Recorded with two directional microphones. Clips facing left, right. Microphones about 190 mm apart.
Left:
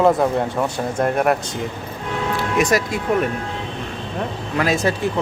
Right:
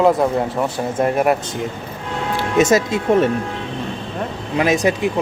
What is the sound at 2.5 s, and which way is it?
Speech, 25° right (ahead or behind).